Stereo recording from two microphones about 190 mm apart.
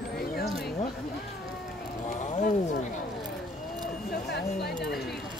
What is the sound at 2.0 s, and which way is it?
Wild animals, 45° left (ahead or behind).